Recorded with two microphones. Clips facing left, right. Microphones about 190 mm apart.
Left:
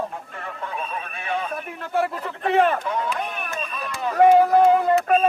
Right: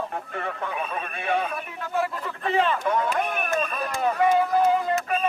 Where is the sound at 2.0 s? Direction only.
60° left (ahead or behind).